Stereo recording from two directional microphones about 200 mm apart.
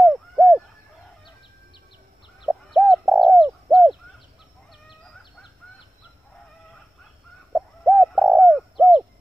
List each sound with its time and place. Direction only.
0.0 s owl: centre (ahead or behind)
2.4 s bird: centre (ahead or behind)
7.5 s bird: centre (ahead or behind)